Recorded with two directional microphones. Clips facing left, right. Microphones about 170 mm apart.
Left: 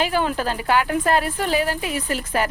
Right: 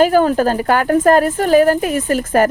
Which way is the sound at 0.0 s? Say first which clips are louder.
Right 10 dB; 45° right (ahead or behind).